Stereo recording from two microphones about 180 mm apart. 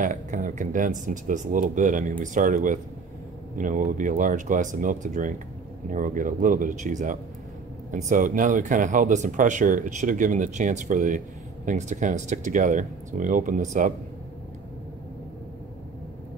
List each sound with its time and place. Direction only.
0.0 s speech: 45° right (ahead or behind)